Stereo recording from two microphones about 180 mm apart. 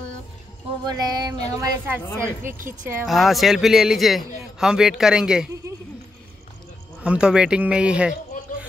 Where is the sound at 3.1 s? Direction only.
Centre (ahead or behind).